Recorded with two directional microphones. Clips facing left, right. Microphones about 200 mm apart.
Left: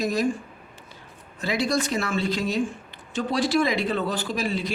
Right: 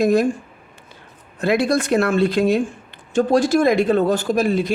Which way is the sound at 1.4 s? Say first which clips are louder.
Right 7 dB; 55° right (ahead or behind).